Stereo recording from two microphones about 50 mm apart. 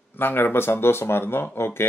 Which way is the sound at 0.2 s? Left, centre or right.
Left.